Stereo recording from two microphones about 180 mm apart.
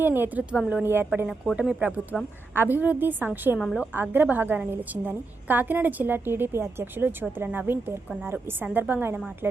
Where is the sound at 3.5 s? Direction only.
Centre (ahead or behind).